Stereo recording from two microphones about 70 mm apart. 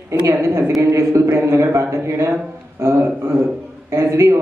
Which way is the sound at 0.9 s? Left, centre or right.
Right.